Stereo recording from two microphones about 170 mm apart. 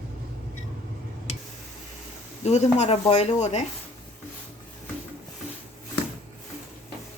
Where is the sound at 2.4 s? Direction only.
40° left (ahead or behind).